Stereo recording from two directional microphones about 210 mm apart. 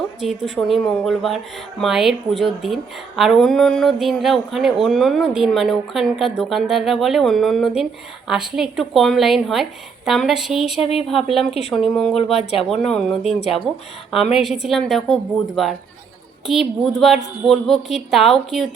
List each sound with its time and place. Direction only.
0.2 s a woman's voice: centre (ahead or behind)
10.8 s speech: 30° left (ahead or behind)
11.1 s a woman's voice: centre (ahead or behind)
12.1 s speech: 30° left (ahead or behind)
12.6 s a woman's voice: centre (ahead or behind)
14.3 s a woman's voice: centre (ahead or behind)